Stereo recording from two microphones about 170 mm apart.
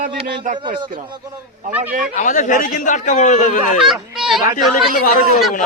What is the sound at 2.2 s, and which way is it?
A man's voice, 50° left (ahead or behind).